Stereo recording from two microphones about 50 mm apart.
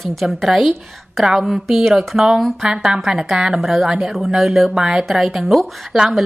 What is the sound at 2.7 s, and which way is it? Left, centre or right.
A woman's voice, centre.